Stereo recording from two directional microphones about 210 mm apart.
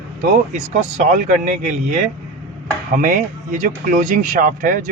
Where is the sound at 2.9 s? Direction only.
40° right (ahead or behind).